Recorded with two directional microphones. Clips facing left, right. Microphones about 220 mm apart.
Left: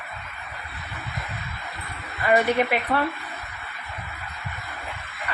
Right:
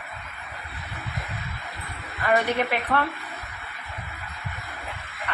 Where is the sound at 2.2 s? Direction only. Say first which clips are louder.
Left 3 dB; 10° left (ahead or behind).